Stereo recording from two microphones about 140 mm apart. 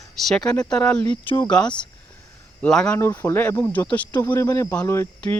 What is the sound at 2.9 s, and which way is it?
Speech, 15° left (ahead or behind).